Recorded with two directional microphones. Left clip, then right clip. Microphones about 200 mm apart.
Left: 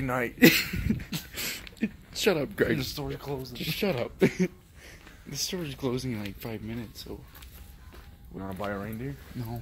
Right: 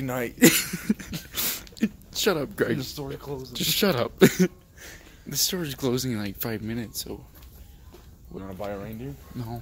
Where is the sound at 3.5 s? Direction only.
40° right (ahead or behind).